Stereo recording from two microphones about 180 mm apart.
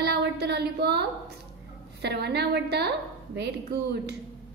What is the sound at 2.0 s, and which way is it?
Speech, 65° right (ahead or behind).